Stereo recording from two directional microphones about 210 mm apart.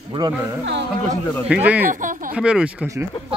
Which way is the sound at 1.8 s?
40° right (ahead or behind).